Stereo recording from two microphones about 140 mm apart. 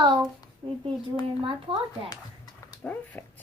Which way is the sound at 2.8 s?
10° left (ahead or behind).